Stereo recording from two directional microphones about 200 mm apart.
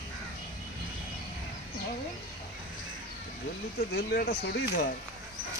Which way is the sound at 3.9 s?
50° left (ahead or behind).